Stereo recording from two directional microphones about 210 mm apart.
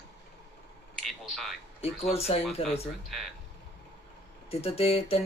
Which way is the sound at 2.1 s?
30° left (ahead or behind).